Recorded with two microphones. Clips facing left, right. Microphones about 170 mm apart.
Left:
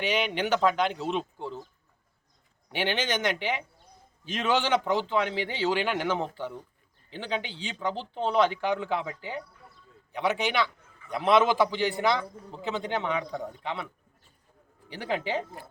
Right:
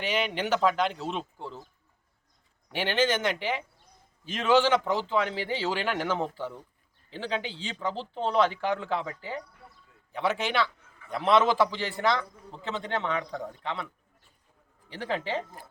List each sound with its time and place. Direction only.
0.0 s a man's voice: 5° right (ahead or behind)
2.7 s a man's voice: 5° right (ahead or behind)